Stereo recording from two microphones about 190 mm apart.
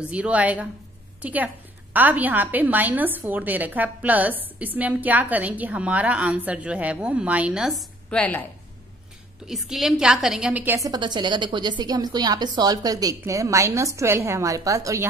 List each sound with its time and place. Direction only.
0.0 s a woman's voice: 5° right (ahead or behind)
8.1 s a woman's voice: 10° left (ahead or behind)
9.5 s a woman's voice: centre (ahead or behind); by 15.0 s 15° right (ahead or behind)